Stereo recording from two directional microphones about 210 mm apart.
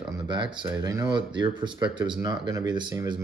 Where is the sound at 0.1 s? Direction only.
20° right (ahead or behind).